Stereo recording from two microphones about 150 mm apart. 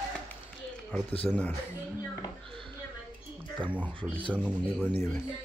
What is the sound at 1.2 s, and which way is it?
Speech, 10° left (ahead or behind).